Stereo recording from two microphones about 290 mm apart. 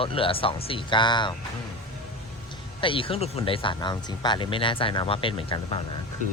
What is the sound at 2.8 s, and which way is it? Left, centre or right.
Speech, centre.